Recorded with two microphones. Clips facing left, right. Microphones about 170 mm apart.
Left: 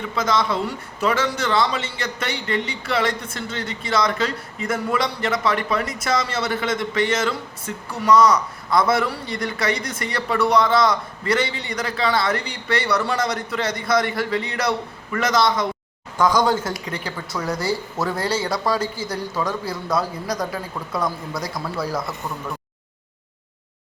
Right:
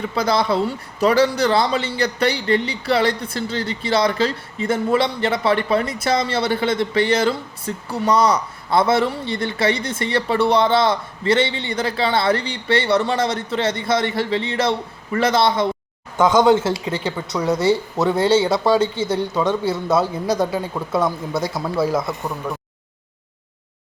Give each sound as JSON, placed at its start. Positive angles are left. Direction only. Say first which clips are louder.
{"t": 0.2, "sound": "a man's voice", "louder": "right 3 dB", "side_deg": -35}